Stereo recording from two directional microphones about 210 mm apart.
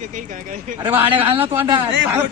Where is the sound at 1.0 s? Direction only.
25° right (ahead or behind).